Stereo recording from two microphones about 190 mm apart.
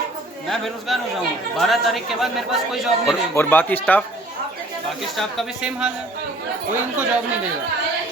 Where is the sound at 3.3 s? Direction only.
10° left (ahead or behind).